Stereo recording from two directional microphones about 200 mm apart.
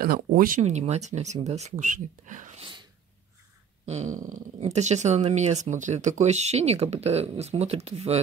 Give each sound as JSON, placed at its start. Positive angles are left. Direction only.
{"t": 0.0, "sound": "speech", "side_deg": -50}
{"t": 0.6, "sound": "speech", "side_deg": -35}
{"t": 3.8, "sound": "a sound", "side_deg": -35}
{"t": 4.7, "sound": "speech", "side_deg": -35}